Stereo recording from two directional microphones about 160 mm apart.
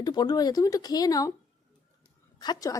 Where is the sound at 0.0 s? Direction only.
25° left (ahead or behind).